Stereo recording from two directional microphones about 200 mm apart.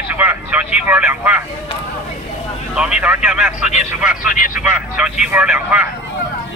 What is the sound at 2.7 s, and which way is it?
Speech, 5° right (ahead or behind).